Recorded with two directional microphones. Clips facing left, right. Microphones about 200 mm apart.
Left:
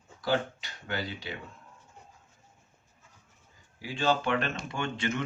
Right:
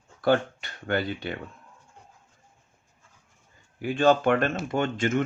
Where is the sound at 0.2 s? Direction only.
55° right (ahead or behind).